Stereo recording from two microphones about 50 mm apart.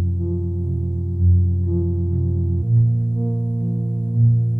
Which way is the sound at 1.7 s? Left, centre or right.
Right.